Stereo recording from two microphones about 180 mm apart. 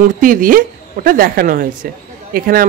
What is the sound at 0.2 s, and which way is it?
A man's voice, 50° right (ahead or behind).